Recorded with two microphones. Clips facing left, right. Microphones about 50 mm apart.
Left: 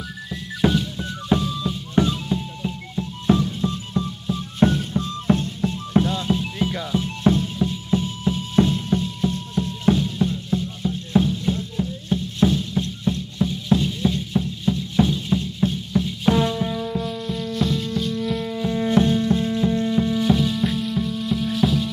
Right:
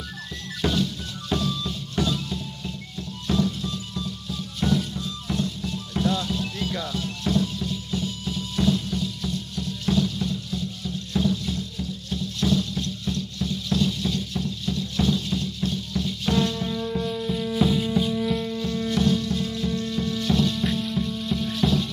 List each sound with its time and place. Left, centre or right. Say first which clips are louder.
0.3 s music: left 6 dB; centre
16.9 s music: even; centre
18.4 s music: left 4 dB; centre